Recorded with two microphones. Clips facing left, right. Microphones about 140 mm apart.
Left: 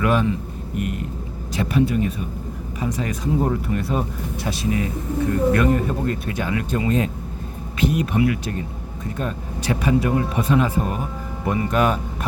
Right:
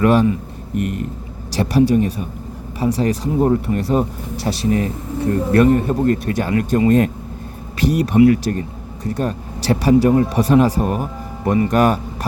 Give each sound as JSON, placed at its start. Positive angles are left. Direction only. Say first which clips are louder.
{"t": 0.0, "sound": "speech", "louder": "right 6 dB", "side_deg": -35}
{"t": 7.9, "sound": "speech", "louder": "right 11 dB", "side_deg": -35}